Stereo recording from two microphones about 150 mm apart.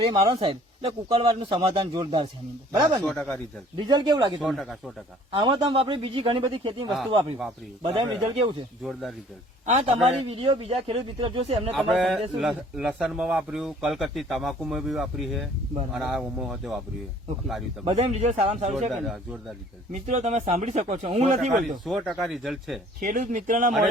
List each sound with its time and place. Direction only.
0.0 s speech: 35° right (ahead or behind)
3.0 s speech: 5° left (ahead or behind)
3.8 s speech: 30° right (ahead or behind)
4.4 s speech: centre (ahead or behind)
5.3 s speech: 35° right (ahead or behind)
8.8 s speech: centre (ahead or behind)
9.6 s speech: 45° right (ahead or behind)
11.7 s speech: centre (ahead or behind)
17.8 s speech: 45° right (ahead or behind)
18.9 s speech: centre (ahead or behind)
19.9 s speech: 50° right (ahead or behind)
21.8 s speech: centre (ahead or behind)
23.0 s speech: 65° right (ahead or behind)